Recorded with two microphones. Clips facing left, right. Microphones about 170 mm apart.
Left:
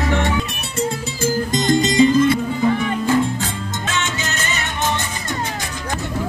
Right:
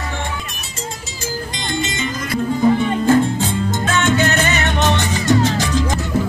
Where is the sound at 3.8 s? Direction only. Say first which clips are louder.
Right 8 dB; 55° right (ahead or behind); by 5.9 s 90° right.